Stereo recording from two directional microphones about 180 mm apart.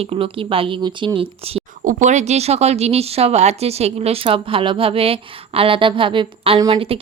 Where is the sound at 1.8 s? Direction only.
40° right (ahead or behind).